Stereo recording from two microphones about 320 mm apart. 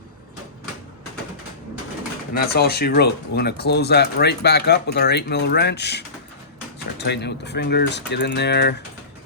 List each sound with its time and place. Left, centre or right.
2.3 s speech: left